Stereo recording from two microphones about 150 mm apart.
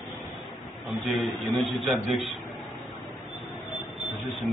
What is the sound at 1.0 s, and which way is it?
A man's voice, centre (ahead or behind).